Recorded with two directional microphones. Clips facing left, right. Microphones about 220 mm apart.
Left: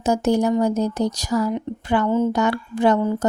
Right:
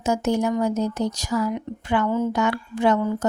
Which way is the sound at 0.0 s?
35° left (ahead or behind).